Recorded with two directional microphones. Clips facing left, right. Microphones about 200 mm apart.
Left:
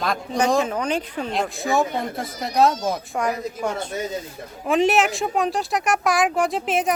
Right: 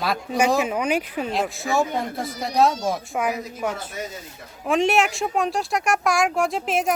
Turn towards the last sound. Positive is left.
turn(degrees=0)  # may be behind; listen again after turning